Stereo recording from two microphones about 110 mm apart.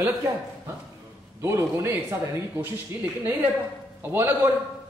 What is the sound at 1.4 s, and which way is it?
Speech, 25° right (ahead or behind).